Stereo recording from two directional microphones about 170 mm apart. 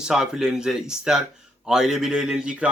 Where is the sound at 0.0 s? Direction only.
5° right (ahead or behind).